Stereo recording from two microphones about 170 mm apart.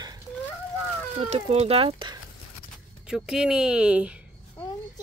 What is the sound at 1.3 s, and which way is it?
Speech, 40° right (ahead or behind).